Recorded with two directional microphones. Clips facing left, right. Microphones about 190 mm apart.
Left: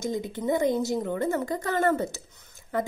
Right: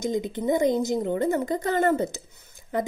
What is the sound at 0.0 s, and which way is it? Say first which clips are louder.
A woman's voice: right 3 dB; 20° right (ahead or behind).